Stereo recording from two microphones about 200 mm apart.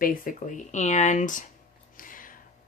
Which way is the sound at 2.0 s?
45° left (ahead or behind).